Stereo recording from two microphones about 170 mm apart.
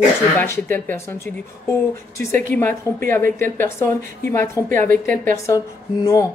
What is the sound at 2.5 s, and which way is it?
A woman's voice, 10° left (ahead or behind).